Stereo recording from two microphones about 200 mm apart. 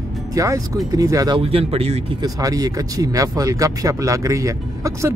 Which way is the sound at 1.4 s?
30° right (ahead or behind).